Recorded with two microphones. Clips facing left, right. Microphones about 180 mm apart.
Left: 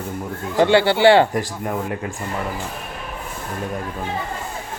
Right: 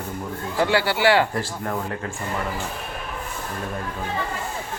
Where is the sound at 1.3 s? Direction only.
15° left (ahead or behind).